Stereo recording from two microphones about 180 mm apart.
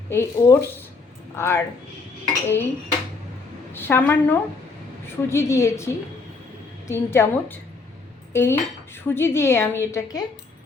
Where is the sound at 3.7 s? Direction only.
10° left (ahead or behind).